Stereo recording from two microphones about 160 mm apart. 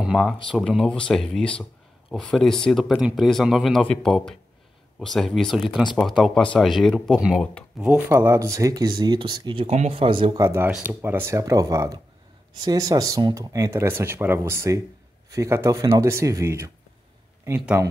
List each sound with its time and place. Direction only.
0.0 s speech: 5° right (ahead or behind)
8.1 s speech: 15° right (ahead or behind)
9.7 s speech: 45° right (ahead or behind)
10.4 s speech: 15° right (ahead or behind)